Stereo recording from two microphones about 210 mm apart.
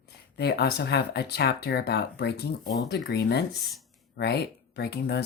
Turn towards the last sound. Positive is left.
turn(degrees=50)  # may be behind; listen again after turning